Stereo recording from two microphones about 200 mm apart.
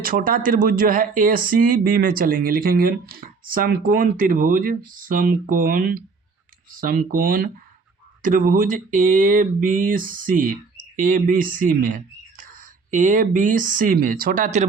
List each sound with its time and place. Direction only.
0.0 s speech: 45° right (ahead or behind)